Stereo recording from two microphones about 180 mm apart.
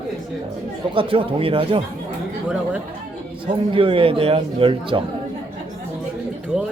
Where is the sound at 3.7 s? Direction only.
30° right (ahead or behind).